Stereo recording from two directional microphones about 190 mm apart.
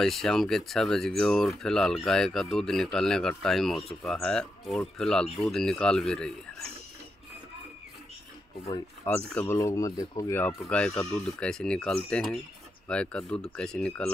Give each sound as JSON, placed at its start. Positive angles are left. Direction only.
{"t": 0.0, "sound": "speech", "side_deg": 0}
{"t": 8.7, "sound": "speech", "side_deg": 10}
{"t": 9.6, "sound": "speech", "side_deg": 15}